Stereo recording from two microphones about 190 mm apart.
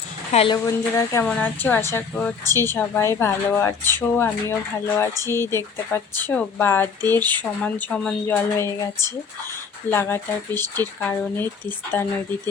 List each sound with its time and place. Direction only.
0.3 s a woman's voice: 20° left (ahead or behind)